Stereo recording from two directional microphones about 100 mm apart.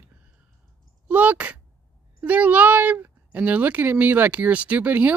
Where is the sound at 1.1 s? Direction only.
15° right (ahead or behind).